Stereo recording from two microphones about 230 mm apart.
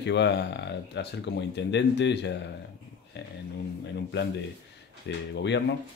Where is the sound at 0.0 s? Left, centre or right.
Left.